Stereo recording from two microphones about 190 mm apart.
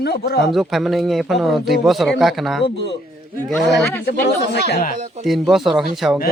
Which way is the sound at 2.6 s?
65° left (ahead or behind).